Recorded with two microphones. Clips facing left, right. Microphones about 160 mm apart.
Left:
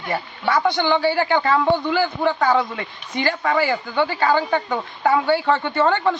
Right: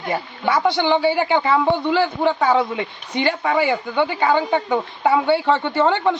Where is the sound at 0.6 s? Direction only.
20° right (ahead or behind).